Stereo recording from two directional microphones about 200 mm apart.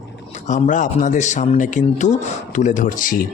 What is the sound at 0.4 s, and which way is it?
Speech, 40° left (ahead or behind).